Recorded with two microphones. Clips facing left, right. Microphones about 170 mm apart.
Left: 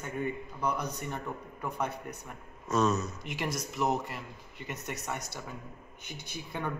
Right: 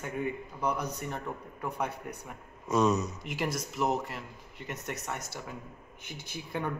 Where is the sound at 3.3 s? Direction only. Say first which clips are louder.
Right 2 dB; 5° right (ahead or behind).